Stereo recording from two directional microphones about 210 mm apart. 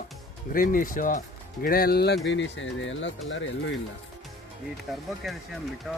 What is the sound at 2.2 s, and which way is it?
Speech, 60° left (ahead or behind).